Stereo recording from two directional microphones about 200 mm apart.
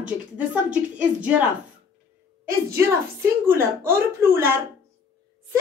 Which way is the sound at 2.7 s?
15° right (ahead or behind).